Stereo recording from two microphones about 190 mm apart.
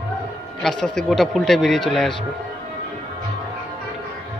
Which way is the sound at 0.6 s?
5° left (ahead or behind).